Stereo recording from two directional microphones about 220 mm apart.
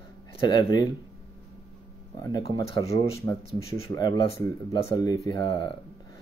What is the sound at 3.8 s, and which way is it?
Speech, 20° left (ahead or behind).